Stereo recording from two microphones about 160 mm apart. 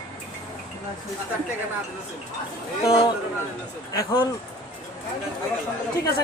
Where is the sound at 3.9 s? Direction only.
20° left (ahead or behind).